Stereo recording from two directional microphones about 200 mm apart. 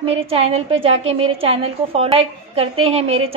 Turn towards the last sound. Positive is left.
turn(degrees=-30)  # may be behind; listen again after turning